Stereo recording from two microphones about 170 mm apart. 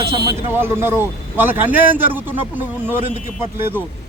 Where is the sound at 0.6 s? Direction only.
15° right (ahead or behind).